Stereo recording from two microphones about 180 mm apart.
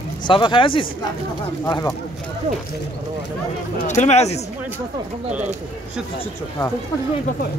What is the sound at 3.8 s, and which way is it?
Speech, 40° left (ahead or behind).